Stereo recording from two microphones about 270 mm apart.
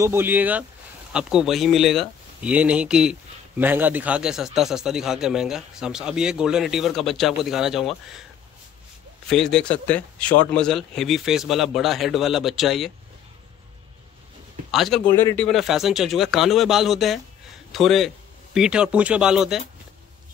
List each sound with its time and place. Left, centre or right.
0.0 s speech: centre
9.3 s speech: centre
14.7 s speech: centre